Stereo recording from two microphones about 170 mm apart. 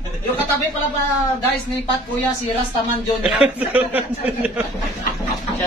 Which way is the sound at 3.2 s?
5° right (ahead or behind).